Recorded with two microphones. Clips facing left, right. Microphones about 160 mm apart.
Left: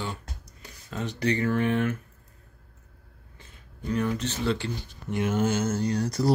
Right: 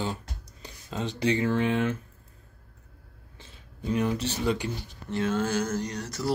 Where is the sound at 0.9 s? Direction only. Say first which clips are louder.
Right 1 dB; 20° right (ahead or behind).